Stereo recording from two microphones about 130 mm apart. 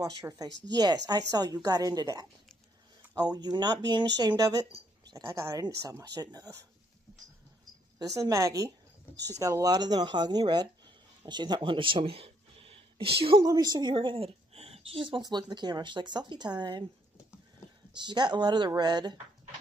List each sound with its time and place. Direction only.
0.0 s speech: 30° right (ahead or behind)
8.0 s a woman's voice: 25° right (ahead or behind); by 13.5 s 45° right (ahead or behind)
13.5 s a woman's voice: 30° right (ahead or behind)
17.9 s speech: 35° right (ahead or behind)